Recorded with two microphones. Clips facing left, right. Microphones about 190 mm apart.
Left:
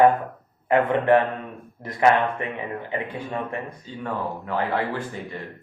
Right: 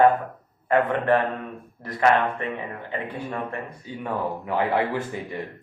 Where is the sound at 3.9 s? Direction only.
15° right (ahead or behind).